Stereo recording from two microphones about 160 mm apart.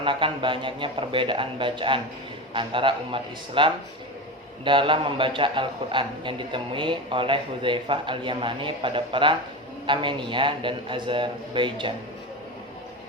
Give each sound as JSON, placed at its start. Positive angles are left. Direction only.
{"t": 0.0, "sound": "a man's voice", "side_deg": -30}